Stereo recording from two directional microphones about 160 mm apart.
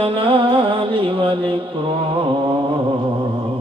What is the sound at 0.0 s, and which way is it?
Music, 35° right (ahead or behind).